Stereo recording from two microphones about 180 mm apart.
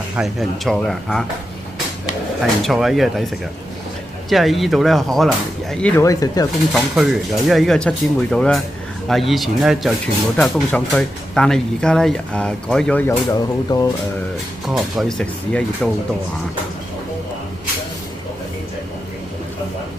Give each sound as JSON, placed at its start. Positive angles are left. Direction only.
{"t": 0.1, "sound": "speech", "side_deg": 0}
{"t": 2.4, "sound": "speech", "side_deg": 0}
{"t": 4.3, "sound": "speech", "side_deg": 0}
{"t": 6.0, "sound": "speech", "side_deg": 20}
{"t": 6.7, "sound": "speech", "side_deg": 0}
{"t": 14.7, "sound": "speech", "side_deg": 0}